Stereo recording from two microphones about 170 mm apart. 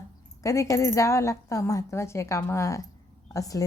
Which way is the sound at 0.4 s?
20° left (ahead or behind).